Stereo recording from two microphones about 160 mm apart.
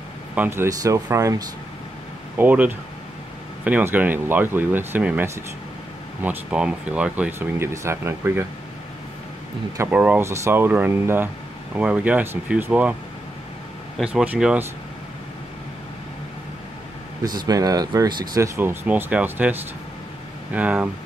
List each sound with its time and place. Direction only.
0.3 s speech: 10° right (ahead or behind)
2.3 s speech: 10° right (ahead or behind)
9.8 s speech: 10° right (ahead or behind)
13.9 s speech: 5° right (ahead or behind)
17.5 s speech: 25° right (ahead or behind)